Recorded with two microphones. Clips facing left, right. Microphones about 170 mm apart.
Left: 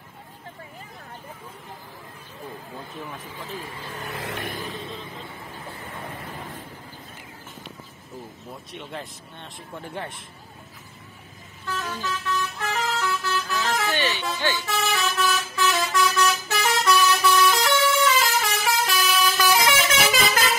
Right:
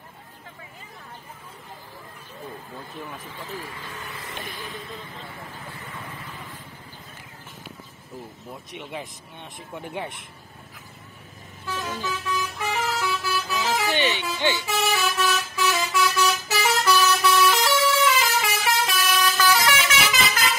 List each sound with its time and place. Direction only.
4.1 s vehicle: 70° left (ahead or behind)
8.7 s speech: 15° right (ahead or behind)
11.6 s vehicle: 10° right (ahead or behind)
14.7 s vehicle: 5° right (ahead or behind)
19.3 s vehicle: 15° left (ahead or behind)